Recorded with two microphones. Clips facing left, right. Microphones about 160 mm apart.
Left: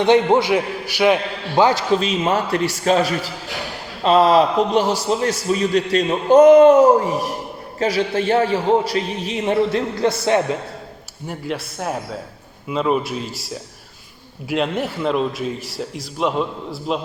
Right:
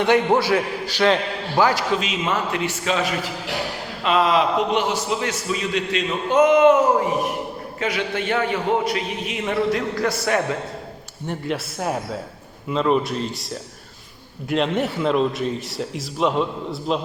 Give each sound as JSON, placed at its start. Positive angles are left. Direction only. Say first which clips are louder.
{"t": 0.0, "sound": "a man's voice", "louder": "left 3 dB", "side_deg": 20}
{"t": 1.5, "sound": "a man's voice", "louder": "left 3 dB", "side_deg": 25}
{"t": 2.0, "sound": "a man's voice", "louder": "left 4 dB", "side_deg": 35}
{"t": 11.3, "sound": "a man's voice", "louder": "right 1 dB", "side_deg": 0}